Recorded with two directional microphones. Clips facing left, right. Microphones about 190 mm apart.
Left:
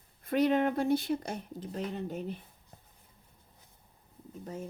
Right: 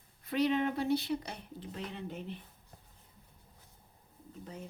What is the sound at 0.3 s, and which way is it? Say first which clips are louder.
Speech: left 4 dB; 50° left (ahead or behind).